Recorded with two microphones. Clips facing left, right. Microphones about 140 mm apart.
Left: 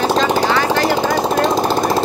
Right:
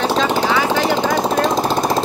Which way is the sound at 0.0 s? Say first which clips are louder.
Left 2 dB; centre (ahead or behind).